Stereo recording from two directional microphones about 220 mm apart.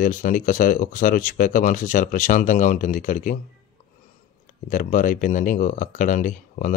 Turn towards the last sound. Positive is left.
turn(degrees=35)  # may be behind; listen again after turning